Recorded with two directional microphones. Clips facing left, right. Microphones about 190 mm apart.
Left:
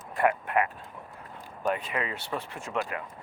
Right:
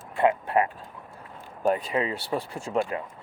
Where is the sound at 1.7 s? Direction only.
35° right (ahead or behind).